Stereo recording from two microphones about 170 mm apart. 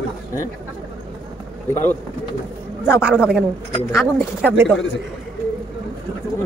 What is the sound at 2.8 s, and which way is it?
A woman's voice, 5° right (ahead or behind).